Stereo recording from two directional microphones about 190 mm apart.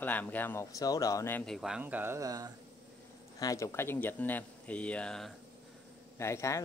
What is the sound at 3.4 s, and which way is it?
Speech, 15° left (ahead or behind).